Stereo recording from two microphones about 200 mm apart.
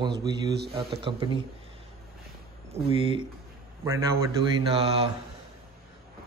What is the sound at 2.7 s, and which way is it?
Speech, 25° right (ahead or behind).